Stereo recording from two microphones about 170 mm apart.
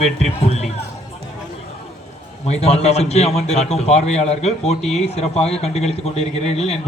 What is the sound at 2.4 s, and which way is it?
A man's voice, 40° left (ahead or behind).